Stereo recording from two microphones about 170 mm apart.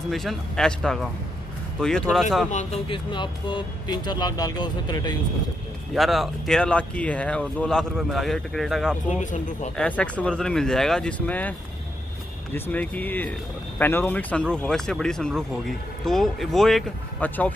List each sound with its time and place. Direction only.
0.1 s speech: centre (ahead or behind)
2.5 s speech: 35° left (ahead or behind)
5.9 s speech: centre (ahead or behind)
9.2 s speech: 45° left (ahead or behind)
9.8 s speech: 10° left (ahead or behind)
12.5 s speech: 10° left (ahead or behind)